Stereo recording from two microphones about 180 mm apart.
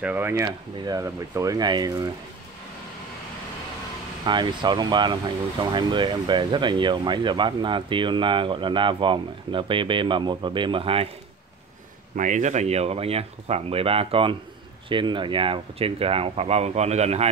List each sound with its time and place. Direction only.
0.0 s speech: 10° right (ahead or behind)
4.2 s speech: 25° right (ahead or behind)
12.2 s speech: 45° right (ahead or behind)